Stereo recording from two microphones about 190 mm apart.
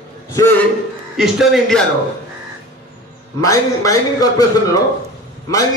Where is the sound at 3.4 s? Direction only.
15° left (ahead or behind).